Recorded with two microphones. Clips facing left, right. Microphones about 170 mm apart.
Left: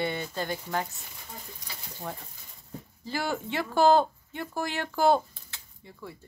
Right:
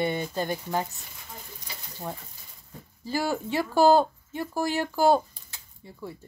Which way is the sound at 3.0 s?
10° right (ahead or behind).